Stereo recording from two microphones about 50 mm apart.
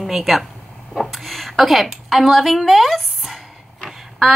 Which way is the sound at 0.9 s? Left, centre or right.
Centre.